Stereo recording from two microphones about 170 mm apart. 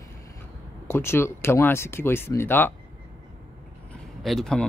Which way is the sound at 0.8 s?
15° left (ahead or behind).